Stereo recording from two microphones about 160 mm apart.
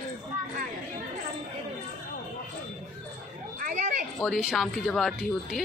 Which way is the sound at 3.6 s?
50° right (ahead or behind).